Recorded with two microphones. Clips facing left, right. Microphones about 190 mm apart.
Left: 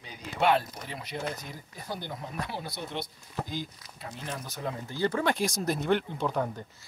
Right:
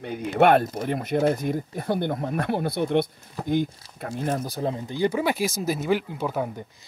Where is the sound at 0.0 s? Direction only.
60° right (ahead or behind).